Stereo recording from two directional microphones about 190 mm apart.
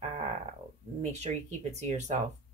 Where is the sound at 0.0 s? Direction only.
35° right (ahead or behind).